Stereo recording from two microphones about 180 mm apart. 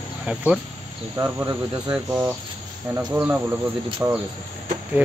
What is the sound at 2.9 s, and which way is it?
Cricket, 10° right (ahead or behind).